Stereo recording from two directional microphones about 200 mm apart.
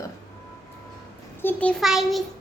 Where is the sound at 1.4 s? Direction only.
5° left (ahead or behind).